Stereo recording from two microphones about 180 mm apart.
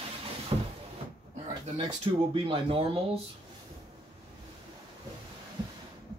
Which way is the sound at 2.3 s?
30° right (ahead or behind).